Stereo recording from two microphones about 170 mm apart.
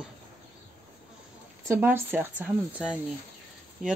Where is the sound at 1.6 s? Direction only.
15° right (ahead or behind).